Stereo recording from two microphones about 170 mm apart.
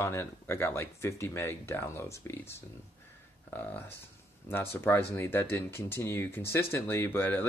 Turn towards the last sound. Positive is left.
turn(degrees=10)  # may be behind; listen again after turning